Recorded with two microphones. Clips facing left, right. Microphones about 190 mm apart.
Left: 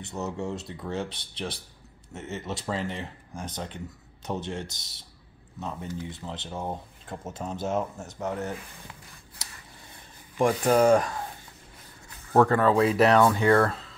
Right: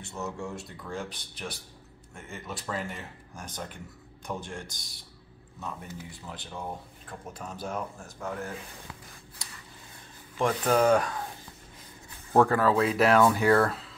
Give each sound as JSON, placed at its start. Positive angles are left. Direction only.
{"t": 0.0, "sound": "speech", "side_deg": 20}
{"t": 10.3, "sound": "speech", "side_deg": 10}
{"t": 12.3, "sound": "speech", "side_deg": -10}